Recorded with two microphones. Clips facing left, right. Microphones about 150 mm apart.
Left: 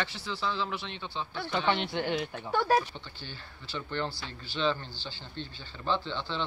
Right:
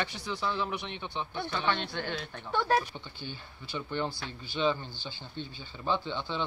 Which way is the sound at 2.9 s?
15° right (ahead or behind).